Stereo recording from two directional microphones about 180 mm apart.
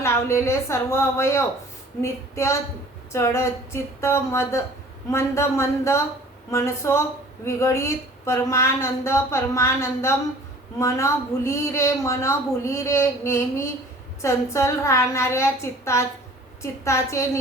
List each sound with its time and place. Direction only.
0.0 s speech: 15° left (ahead or behind)